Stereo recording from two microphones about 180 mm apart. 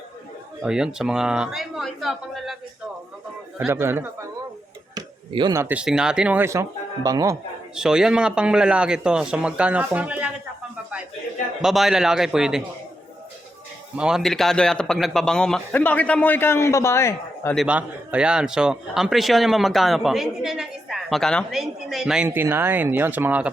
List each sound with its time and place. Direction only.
0.6 s a man's voice: 5° right (ahead or behind)
3.6 s speech: 15° right (ahead or behind)
4.9 s a sound: 25° right (ahead or behind)
5.6 s speech: 5° right (ahead or behind)
7.8 s a man's voice: 5° right (ahead or behind)
11.6 s a man's voice: centre (ahead or behind)
13.9 s a man's voice: 5° right (ahead or behind); by 17.5 s 15° left (ahead or behind)
17.5 s a man's voice: 5° right (ahead or behind)